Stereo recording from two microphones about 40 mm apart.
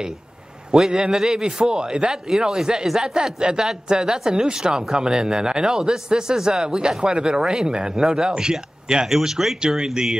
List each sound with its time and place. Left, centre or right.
0.7 s a man's voice: centre
9.6 s a man's voice: centre